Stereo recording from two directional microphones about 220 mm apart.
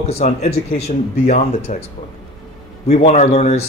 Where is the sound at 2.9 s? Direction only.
30° left (ahead or behind).